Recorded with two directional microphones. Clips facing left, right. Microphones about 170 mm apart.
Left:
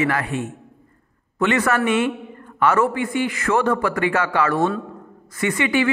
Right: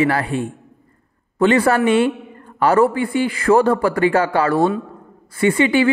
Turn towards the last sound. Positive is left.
turn(degrees=-30)  # may be behind; listen again after turning